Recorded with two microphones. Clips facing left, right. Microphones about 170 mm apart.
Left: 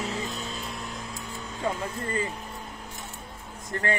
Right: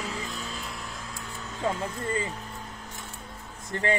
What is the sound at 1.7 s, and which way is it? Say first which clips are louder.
Speech: even; 20° right (ahead or behind).